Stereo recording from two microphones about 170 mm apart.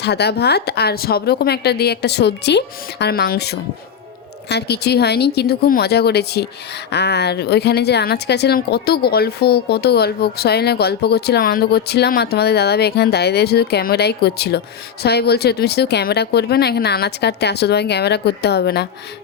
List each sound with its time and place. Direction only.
0.0 s speech: 75° left (ahead or behind)